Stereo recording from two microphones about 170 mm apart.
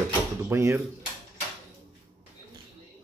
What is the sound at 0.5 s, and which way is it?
Speech, 15° right (ahead or behind).